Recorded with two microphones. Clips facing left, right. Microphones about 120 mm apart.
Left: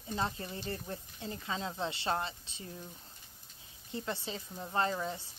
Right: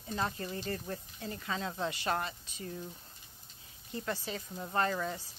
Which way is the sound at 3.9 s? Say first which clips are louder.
Right 1 dB; 25° left (ahead or behind).